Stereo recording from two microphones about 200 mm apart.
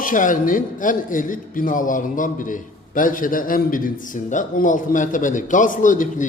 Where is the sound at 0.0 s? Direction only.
40° left (ahead or behind).